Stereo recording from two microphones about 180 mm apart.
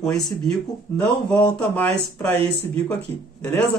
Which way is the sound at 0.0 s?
Centre (ahead or behind).